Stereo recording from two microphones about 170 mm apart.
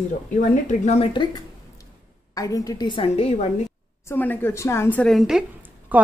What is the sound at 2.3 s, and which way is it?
A woman's voice, 20° left (ahead or behind).